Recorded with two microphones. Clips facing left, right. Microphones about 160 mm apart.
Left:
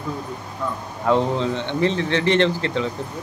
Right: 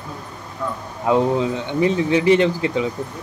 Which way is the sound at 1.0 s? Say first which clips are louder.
Right 2 dB; 10° right (ahead or behind).